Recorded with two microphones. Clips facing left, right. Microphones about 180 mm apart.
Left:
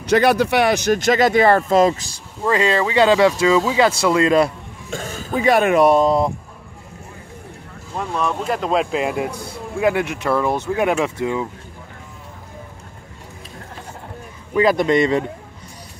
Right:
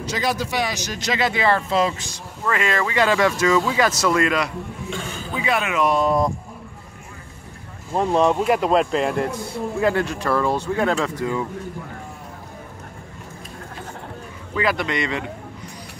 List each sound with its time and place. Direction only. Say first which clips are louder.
0.0 s speech: left 9 dB; 60° left (ahead or behind); by 4.5 s 25° left (ahead or behind)
4.8 s speech: left 6 dB; 40° left (ahead or behind)
5.9 s speech: left 4 dB; 35° left (ahead or behind)
7.9 s speech: right 5 dB; 30° right (ahead or behind)
8.5 s speech: right 2 dB; 5° right (ahead or behind); by 11.4 s 20° left (ahead or behind)
14.6 s speech: left 8 dB; 40° left (ahead or behind)